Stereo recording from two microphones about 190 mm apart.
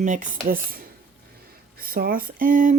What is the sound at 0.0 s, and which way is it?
Speech, 45° right (ahead or behind).